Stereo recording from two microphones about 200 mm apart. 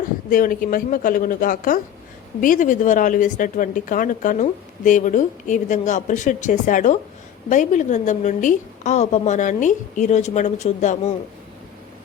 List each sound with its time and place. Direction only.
0.3 s a woman's voice: 45° left (ahead or behind)